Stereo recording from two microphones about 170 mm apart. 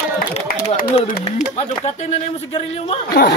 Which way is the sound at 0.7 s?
55° left (ahead or behind).